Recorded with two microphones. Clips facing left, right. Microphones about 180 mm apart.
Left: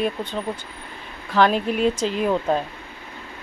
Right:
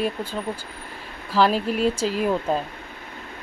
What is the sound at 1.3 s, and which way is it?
Speech, 5° right (ahead or behind).